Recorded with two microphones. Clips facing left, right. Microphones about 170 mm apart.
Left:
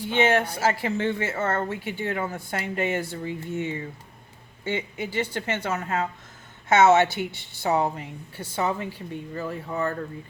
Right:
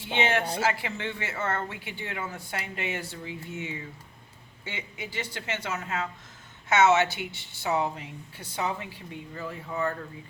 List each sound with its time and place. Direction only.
0.2 s speech: 45° left (ahead or behind)